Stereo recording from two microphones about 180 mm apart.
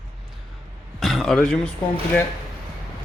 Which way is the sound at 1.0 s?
Centre (ahead or behind).